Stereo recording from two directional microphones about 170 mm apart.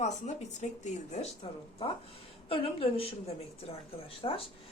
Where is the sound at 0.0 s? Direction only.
45° left (ahead or behind).